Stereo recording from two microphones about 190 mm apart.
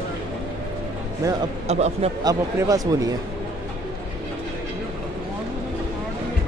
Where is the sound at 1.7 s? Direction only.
35° right (ahead or behind).